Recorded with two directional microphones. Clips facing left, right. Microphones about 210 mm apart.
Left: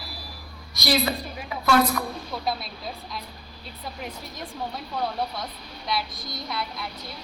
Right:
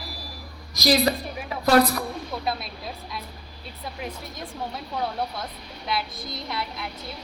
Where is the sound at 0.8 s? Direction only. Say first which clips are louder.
Right 3 dB; 35° right (ahead or behind).